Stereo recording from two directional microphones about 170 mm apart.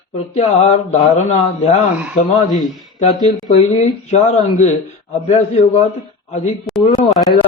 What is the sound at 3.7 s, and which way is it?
A man's voice, 40° left (ahead or behind).